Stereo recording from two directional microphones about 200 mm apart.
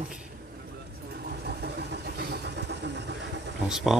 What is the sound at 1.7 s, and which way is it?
Vehicle, 50° right (ahead or behind).